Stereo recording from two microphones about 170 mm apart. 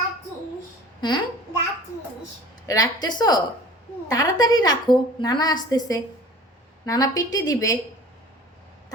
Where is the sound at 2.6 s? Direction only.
20° left (ahead or behind).